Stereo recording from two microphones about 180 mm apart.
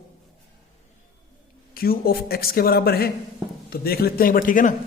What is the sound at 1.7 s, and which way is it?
A man's voice, 55° left (ahead or behind).